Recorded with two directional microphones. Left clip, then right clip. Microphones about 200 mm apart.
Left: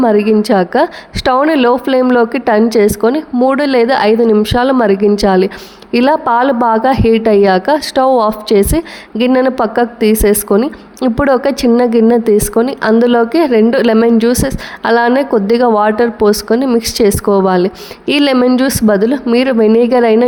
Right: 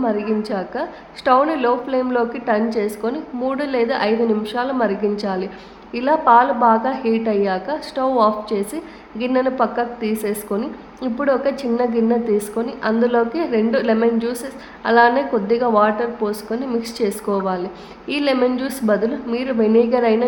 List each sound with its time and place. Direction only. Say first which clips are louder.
0.0 s a woman's voice: left 11 dB; 45° left (ahead or behind)